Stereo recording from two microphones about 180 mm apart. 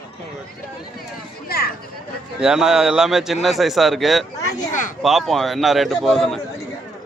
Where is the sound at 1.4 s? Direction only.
60° left (ahead or behind).